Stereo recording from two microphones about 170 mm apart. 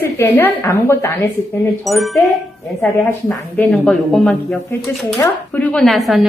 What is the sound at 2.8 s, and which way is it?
Speech, 10° left (ahead or behind).